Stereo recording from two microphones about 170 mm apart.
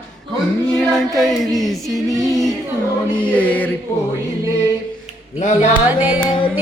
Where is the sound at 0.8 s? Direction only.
Centre (ahead or behind).